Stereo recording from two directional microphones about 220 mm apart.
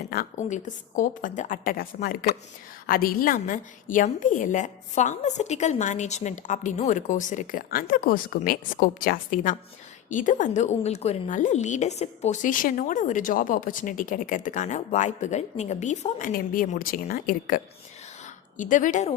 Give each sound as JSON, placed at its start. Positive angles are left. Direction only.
{"t": 0.1, "sound": "a woman's voice", "side_deg": 35}